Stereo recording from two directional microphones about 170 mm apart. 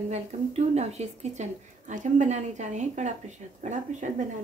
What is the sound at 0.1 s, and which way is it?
A woman's voice, 40° right (ahead or behind).